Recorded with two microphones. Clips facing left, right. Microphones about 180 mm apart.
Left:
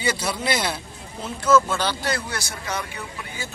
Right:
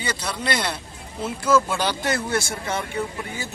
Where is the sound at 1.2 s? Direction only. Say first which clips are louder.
Left 1 dB; 10° right (ahead or behind).